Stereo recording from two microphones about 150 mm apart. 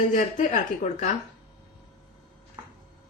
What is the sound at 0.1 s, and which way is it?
A woman's voice, 55° left (ahead or behind).